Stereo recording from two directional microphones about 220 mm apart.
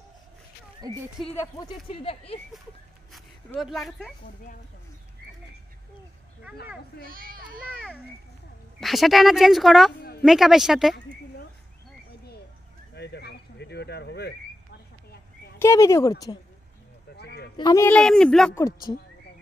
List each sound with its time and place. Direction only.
0.8 s speech: 15° right (ahead or behind)
1.3 s speech: 15° left (ahead or behind)
3.1 s a sound: centre (ahead or behind)
7.0 s a child's voice: 40° right (ahead or behind)
8.7 s speech: centre (ahead or behind)
12.9 s speech: 50° left (ahead or behind)
15.6 s speech: 15° left (ahead or behind)
17.2 s a sound: 45° left (ahead or behind)
17.6 s speech: 15° left (ahead or behind)